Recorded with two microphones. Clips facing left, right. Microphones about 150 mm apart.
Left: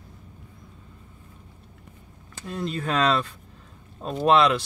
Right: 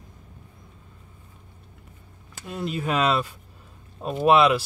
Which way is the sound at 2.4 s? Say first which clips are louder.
Right 1 dB; 5° right (ahead or behind).